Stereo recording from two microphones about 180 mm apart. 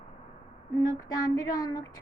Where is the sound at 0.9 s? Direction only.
20° left (ahead or behind).